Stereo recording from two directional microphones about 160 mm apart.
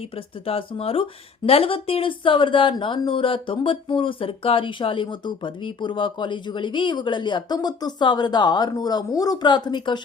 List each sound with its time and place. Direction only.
0.4 s speech: 35° left (ahead or behind)